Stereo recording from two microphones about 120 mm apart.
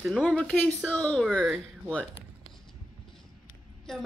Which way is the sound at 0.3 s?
10° left (ahead or behind).